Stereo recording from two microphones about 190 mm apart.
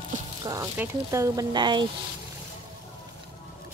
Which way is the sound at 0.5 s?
15° right (ahead or behind).